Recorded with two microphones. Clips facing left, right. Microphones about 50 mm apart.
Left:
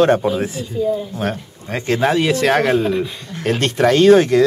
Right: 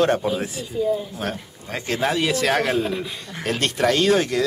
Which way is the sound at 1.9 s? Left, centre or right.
Left.